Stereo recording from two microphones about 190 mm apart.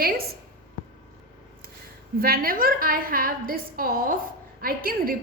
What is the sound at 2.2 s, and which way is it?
A woman's voice, 50° right (ahead or behind).